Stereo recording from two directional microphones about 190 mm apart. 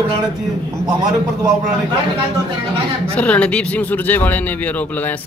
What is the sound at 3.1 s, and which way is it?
Speech, 5° left (ahead or behind).